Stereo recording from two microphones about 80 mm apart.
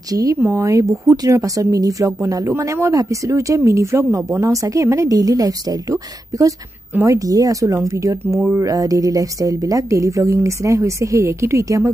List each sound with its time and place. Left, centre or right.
0.1 s speech: right